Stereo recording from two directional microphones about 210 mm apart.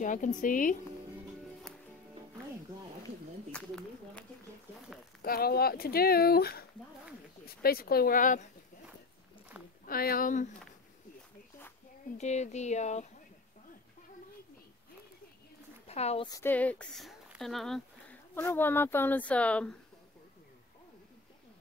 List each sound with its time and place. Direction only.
0.0 s speech: 40° left (ahead or behind)
1.7 s music: centre (ahead or behind)
3.5 s speech: 5° left (ahead or behind)
5.2 s speech: 45° left (ahead or behind)
9.8 s speech: 45° left (ahead or behind)
12.2 s speech: 35° left (ahead or behind)
15.9 s speech: 30° left (ahead or behind)
16.3 s speech: 10° left (ahead or behind)
18.3 s speech: 10° left (ahead or behind)